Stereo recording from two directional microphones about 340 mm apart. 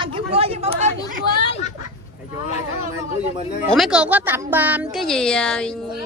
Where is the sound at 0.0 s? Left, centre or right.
Centre.